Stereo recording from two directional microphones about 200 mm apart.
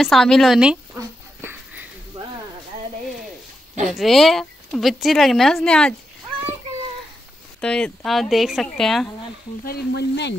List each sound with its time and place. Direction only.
0.0 s a woman's voice: centre (ahead or behind)
0.9 s a sound: 10° right (ahead or behind)
3.9 s a woman's voice: centre (ahead or behind)
7.6 s a woman's voice: 5° left (ahead or behind)
9.7 s sizzle: 55° left (ahead or behind)